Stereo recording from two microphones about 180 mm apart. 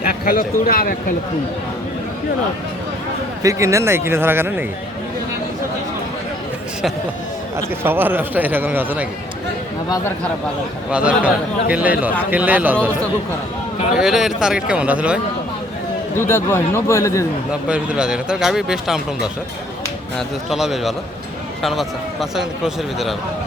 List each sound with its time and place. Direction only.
0.0 s a man's voice: 55° left (ahead or behind)
3.4 s a man's voice: 15° right (ahead or behind)
7.9 s a man's voice: 10° right (ahead or behind)
10.9 s a man's voice: 5° right (ahead or behind)
13.9 s speech: centre (ahead or behind)
16.1 s speech: 15° left (ahead or behind)
17.5 s speech: 5° right (ahead or behind)